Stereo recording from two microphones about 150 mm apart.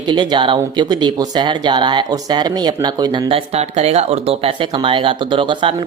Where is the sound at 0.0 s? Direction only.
30° right (ahead or behind).